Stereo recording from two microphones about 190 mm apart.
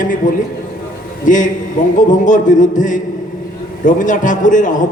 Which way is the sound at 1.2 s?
40° left (ahead or behind).